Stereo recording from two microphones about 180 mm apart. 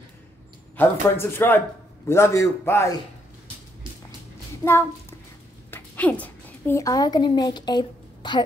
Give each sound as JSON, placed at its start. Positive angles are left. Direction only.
{"t": 0.7, "sound": "speech", "side_deg": 15}
{"t": 5.7, "sound": "a child's voice", "side_deg": 10}